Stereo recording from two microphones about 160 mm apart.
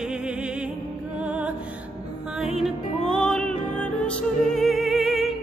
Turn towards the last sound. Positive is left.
turn(degrees=0)  # may be behind; listen again after turning